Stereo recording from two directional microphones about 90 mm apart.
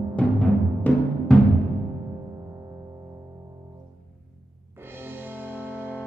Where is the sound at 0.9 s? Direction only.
15° left (ahead or behind).